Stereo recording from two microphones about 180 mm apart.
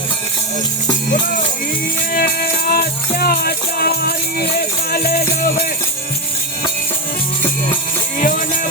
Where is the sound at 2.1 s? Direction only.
55° left (ahead or behind).